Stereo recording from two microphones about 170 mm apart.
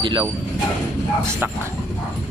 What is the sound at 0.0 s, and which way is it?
Speech, 25° right (ahead or behind).